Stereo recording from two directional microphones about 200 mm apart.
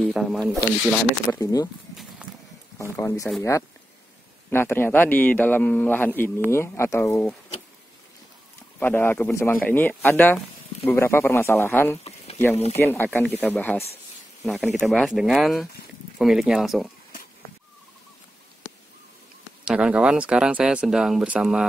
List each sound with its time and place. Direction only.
0.0 s speech: centre (ahead or behind)
1.2 s a man's voice: 15° left (ahead or behind)
2.2 s a sound: 5° right (ahead or behind)
2.8 s a man's voice: 15° left (ahead or behind)
4.5 s a man's voice: 10° left (ahead or behind)
8.7 s a man's voice: 10° left (ahead or behind)
19.6 s speech: 5° right (ahead or behind)